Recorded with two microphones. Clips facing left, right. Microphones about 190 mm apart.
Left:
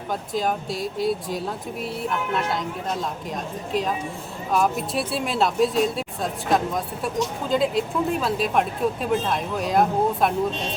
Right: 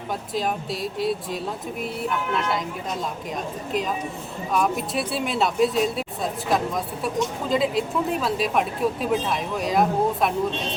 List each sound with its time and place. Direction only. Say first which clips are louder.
0.1 s speech: left 1 dB; centre (ahead or behind)
3.7 s speech: left 2 dB; centre (ahead or behind)